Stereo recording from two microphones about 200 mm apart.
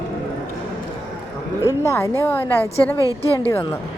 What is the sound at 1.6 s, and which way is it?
Speech, 15° left (ahead or behind).